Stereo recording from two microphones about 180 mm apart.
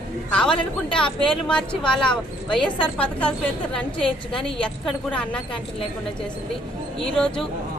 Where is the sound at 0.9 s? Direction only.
5° left (ahead or behind).